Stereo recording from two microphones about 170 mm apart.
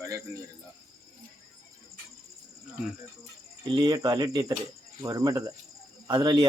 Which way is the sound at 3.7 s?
25° right (ahead or behind).